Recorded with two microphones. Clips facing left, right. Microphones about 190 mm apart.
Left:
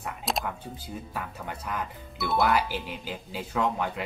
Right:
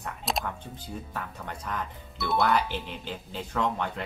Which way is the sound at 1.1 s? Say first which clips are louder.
Left 1 dB; 5° left (ahead or behind).